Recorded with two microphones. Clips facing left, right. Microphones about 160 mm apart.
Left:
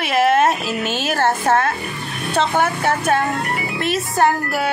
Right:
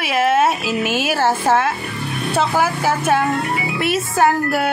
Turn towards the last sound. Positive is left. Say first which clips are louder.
# right 1 dB
turn(degrees=0)  # may be behind; listen again after turning